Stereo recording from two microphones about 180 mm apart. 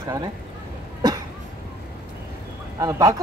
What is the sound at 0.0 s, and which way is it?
Speech, 20° right (ahead or behind).